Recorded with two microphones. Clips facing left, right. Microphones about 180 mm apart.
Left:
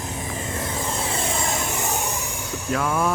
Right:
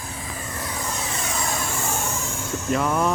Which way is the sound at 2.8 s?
10° left (ahead or behind).